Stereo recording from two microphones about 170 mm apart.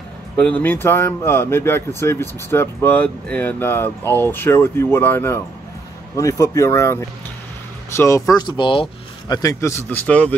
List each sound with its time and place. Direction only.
0.4 s speech: 10° left (ahead or behind)